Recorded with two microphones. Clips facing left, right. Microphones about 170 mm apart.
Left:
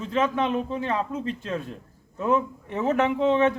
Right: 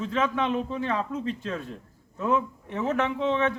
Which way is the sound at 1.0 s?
5° left (ahead or behind).